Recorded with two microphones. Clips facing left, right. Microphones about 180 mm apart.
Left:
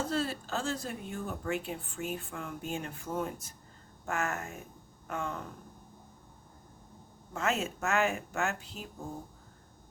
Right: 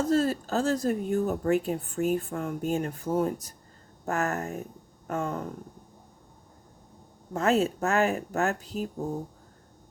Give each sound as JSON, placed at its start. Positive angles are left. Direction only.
{"t": 0.0, "sound": "a woman's voice", "side_deg": -40}
{"t": 7.3, "sound": "a woman's voice", "side_deg": -35}